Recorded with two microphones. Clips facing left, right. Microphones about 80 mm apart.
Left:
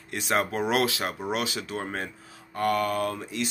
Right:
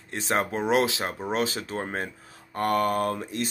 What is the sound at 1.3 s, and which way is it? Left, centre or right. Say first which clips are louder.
Speech: right 2 dB; right.